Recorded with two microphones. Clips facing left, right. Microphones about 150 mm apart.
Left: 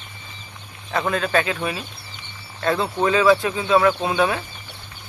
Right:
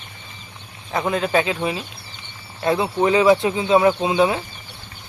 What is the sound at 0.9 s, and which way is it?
Speech, 20° right (ahead or behind).